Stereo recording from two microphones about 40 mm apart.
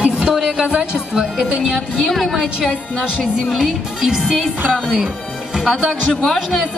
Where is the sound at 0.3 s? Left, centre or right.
Centre.